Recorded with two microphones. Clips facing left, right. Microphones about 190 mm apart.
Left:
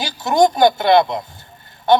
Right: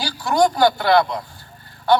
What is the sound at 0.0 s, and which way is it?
A man's voice, 20° left (ahead or behind).